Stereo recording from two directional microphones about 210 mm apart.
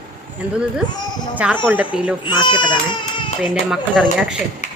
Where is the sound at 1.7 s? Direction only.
5° right (ahead or behind).